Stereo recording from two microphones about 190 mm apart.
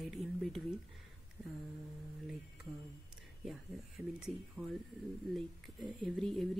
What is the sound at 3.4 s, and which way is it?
Speech, centre (ahead or behind).